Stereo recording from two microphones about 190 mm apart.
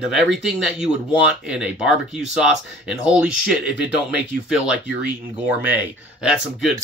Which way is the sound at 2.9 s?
5° right (ahead or behind).